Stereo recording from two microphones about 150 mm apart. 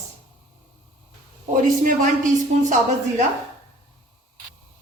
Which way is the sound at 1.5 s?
60° right (ahead or behind).